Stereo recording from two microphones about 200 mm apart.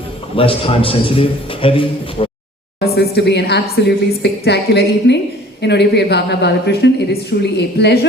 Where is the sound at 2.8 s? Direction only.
55° left (ahead or behind).